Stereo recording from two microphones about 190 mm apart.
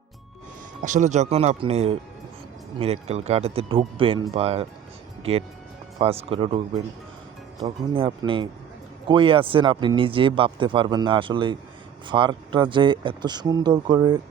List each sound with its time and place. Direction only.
0.8 s speech: 40° right (ahead or behind)
7.6 s speech: 30° right (ahead or behind)